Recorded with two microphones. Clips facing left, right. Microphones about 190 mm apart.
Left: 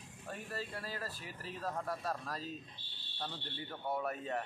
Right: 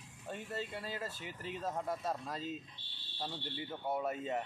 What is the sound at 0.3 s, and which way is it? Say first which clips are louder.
Speech: right 2 dB; 20° right (ahead or behind).